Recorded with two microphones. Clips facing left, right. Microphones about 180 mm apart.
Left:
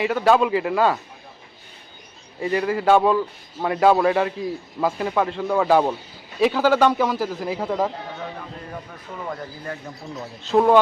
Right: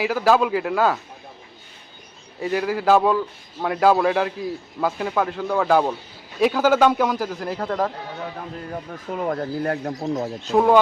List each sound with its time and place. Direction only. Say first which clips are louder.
0.0 s a man's voice: left 1 dB; centre (ahead or behind)
2.4 s a man's voice: left 1 dB; centre (ahead or behind)
9.1 s speech: right 8 dB; 55° right (ahead or behind); by 10.1 s 80° right
10.4 s a man's voice: left 1 dB; centre (ahead or behind)